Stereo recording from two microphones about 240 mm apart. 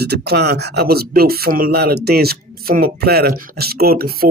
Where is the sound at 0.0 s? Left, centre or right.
Right.